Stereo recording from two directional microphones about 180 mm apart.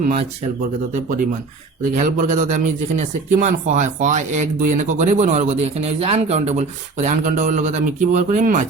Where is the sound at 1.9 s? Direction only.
45° right (ahead or behind).